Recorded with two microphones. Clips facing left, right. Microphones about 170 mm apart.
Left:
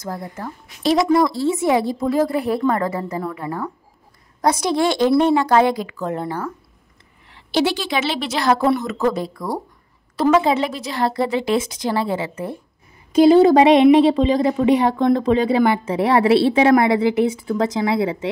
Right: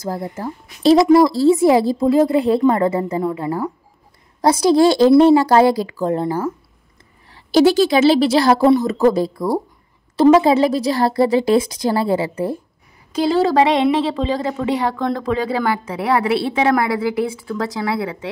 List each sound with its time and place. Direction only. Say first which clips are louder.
0.0 s a woman's voice: right 4 dB; 30° right (ahead or behind)
7.3 s a woman's voice: right 7 dB; 40° right (ahead or behind)
13.1 s a woman's voice: left 5 dB; 20° left (ahead or behind)